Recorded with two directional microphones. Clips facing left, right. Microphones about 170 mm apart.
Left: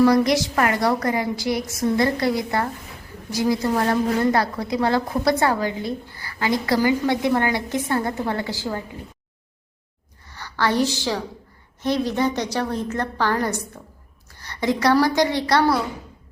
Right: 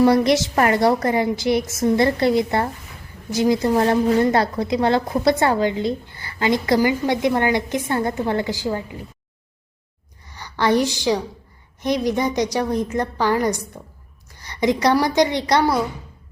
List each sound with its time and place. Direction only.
0.0 s a woman's voice: 25° right (ahead or behind)
10.2 s a woman's voice: 15° right (ahead or behind)